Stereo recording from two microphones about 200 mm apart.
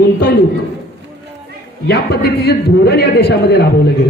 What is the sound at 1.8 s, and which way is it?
A man's voice, 55° left (ahead or behind).